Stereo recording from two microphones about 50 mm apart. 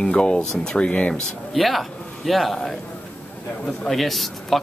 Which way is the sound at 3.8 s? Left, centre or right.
Centre.